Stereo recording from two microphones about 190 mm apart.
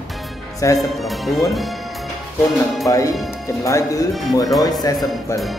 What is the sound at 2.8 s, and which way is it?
Speech, 15° left (ahead or behind).